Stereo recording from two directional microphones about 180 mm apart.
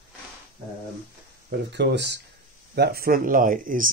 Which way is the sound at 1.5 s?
70° right (ahead or behind).